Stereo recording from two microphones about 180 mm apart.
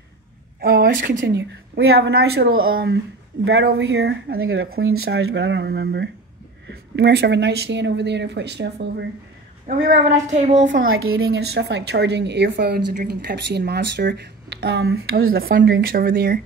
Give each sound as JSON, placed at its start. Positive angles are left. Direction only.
{"t": 0.6, "sound": "a sound", "side_deg": -60}
{"t": 1.2, "sound": "a woman's voice", "side_deg": -65}
{"t": 3.4, "sound": "a woman's voice", "side_deg": -75}
{"t": 9.7, "sound": "a woman's voice", "side_deg": -45}
{"t": 10.8, "sound": "a woman's voice", "side_deg": -90}